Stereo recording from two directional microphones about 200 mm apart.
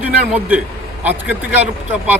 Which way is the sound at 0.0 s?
10° right (ahead or behind).